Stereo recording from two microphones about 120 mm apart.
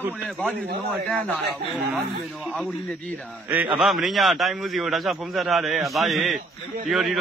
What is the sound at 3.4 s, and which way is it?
Speech, 15° right (ahead or behind).